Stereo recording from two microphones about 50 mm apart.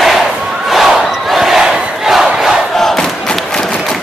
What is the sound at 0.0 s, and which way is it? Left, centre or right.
Battle cry, centre.